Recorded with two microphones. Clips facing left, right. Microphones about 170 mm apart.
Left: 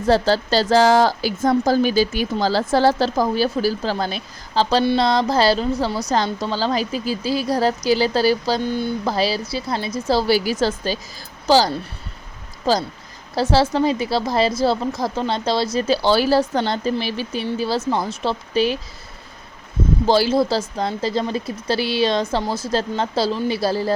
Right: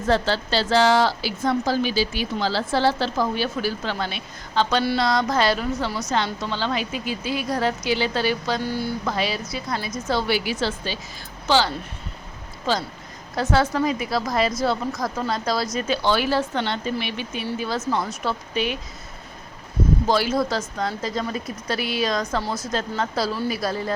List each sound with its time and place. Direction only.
0.0 s a woman's voice: 35° left (ahead or behind)
8.6 s speech: 20° left (ahead or behind)
9.0 s a woman's voice: 35° left (ahead or behind)
20.1 s a woman's voice: 30° left (ahead or behind)